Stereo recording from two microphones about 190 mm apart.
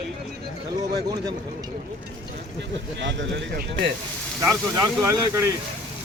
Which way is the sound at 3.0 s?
70° right (ahead or behind).